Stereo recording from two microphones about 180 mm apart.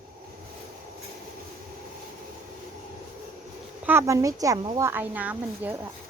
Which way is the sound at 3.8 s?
15° right (ahead or behind).